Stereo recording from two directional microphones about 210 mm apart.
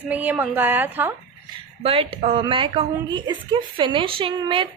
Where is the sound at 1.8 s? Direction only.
25° right (ahead or behind).